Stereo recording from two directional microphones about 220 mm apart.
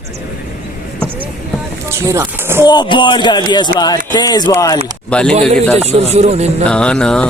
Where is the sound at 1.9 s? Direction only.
15° right (ahead or behind).